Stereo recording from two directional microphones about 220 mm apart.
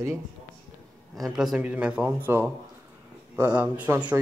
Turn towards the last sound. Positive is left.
turn(degrees=-5)  # may be behind; listen again after turning